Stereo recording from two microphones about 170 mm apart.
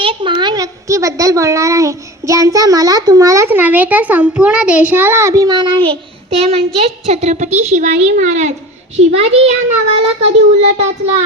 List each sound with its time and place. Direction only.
0.0 s a child's voice: 30° right (ahead or behind)